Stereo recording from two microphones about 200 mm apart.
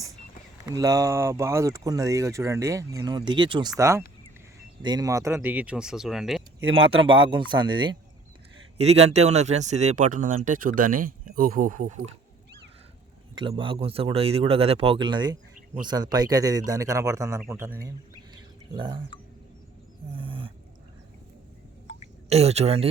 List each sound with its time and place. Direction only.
0.6 s speech: 15° right (ahead or behind); by 6.4 s centre (ahead or behind)
6.7 s speech: 25° right (ahead or behind)
13.4 s speech: 25° right (ahead or behind)
20.1 s a sound: 25° right (ahead or behind)
22.3 s speech: 30° right (ahead or behind)